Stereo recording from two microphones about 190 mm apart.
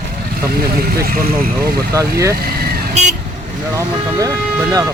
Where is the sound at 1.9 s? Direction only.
15° right (ahead or behind).